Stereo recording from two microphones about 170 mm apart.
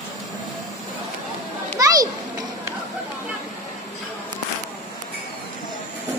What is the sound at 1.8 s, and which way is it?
Children playing, 20° right (ahead or behind).